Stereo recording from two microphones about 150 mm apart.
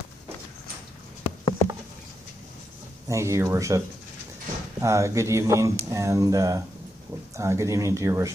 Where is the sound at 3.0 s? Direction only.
20° right (ahead or behind).